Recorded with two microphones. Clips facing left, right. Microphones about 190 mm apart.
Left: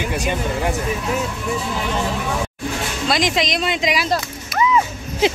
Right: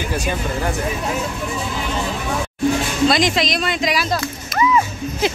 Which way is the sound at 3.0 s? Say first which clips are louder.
Right 3 dB; 10° left (ahead or behind).